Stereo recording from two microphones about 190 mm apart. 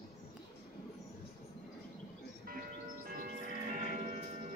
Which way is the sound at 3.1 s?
45° right (ahead or behind).